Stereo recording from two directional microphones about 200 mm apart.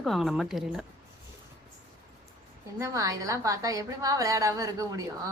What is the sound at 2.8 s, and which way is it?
A woman's voice, 15° right (ahead or behind).